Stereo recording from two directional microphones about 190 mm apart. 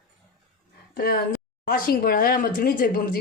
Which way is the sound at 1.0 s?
50° left (ahead or behind).